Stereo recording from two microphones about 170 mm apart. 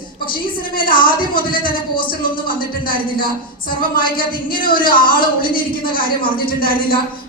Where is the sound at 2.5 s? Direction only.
55° left (ahead or behind).